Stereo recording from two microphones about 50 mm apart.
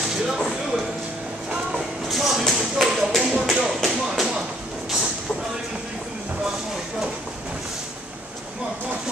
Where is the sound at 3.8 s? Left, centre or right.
Centre.